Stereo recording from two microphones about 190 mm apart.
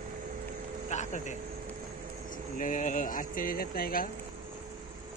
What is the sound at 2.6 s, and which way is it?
Speech, 40° left (ahead or behind).